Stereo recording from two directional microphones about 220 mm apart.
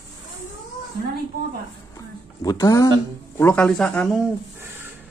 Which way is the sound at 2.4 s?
15° left (ahead or behind).